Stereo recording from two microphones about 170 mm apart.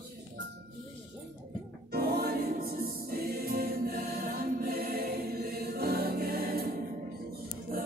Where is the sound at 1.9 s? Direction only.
70° right (ahead or behind).